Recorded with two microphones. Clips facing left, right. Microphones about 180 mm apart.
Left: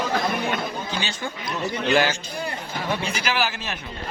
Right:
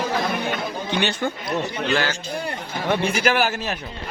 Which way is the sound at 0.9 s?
65° right (ahead or behind).